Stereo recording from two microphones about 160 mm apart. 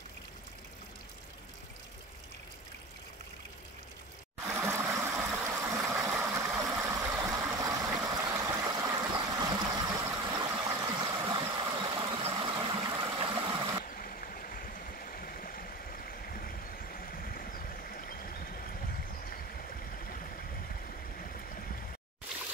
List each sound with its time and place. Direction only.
4.5 s stream: 15° right (ahead or behind)
9.8 s vehicle: 20° right (ahead or behind)
12.4 s a sound: 30° right (ahead or behind)
13.9 s stream: 60° left (ahead or behind)
16.1 s vehicle: 65° left (ahead or behind)